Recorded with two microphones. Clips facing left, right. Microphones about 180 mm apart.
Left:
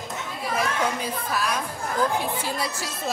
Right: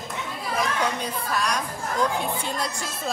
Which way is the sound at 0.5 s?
5° left (ahead or behind).